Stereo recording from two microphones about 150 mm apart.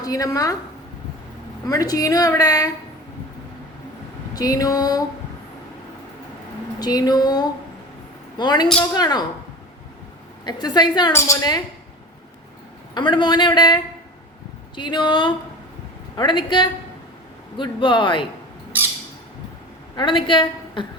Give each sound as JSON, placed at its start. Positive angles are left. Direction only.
{"t": 0.0, "sound": "a woman's voice", "side_deg": 25}
{"t": 1.6, "sound": "a woman's voice", "side_deg": 25}
{"t": 4.4, "sound": "a woman's voice", "side_deg": 25}
{"t": 6.7, "sound": "a woman's voice", "side_deg": 25}
{"t": 10.4, "sound": "a woman's voice", "side_deg": 30}
{"t": 12.9, "sound": "a woman's voice", "side_deg": 30}
{"t": 20.0, "sound": "a woman's voice", "side_deg": 35}